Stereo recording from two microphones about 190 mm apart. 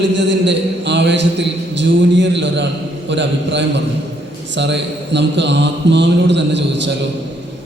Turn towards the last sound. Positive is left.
turn(degrees=-70)  # may be behind; listen again after turning